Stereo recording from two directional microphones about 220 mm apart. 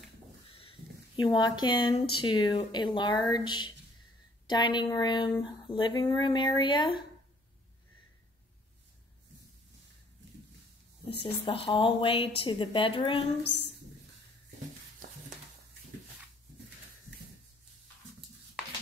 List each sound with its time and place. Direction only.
0.5 s a sound: 25° left (ahead or behind)
2.2 s a woman's voice: 20° left (ahead or behind)
11.1 s a woman's voice: 25° left (ahead or behind)